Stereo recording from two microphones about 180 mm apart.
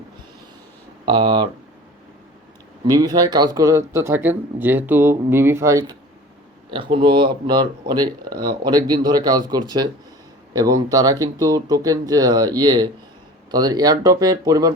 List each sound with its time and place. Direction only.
1.0 s speech: 25° right (ahead or behind)
2.8 s speech: 20° right (ahead or behind)
6.7 s speech: 30° right (ahead or behind)